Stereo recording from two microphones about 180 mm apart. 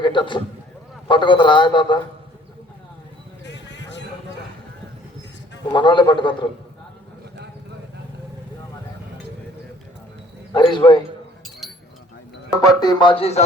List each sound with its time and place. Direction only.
0.0 s a man's voice: 25° left (ahead or behind)
3.4 s basketball bounce: 75° left (ahead or behind)
5.7 s a man's voice: 25° left (ahead or behind)
10.5 s a man's voice: 25° left (ahead or behind)
12.6 s a man's voice: 20° left (ahead or behind)